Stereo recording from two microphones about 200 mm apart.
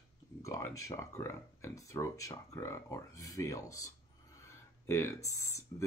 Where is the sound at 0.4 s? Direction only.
15° left (ahead or behind).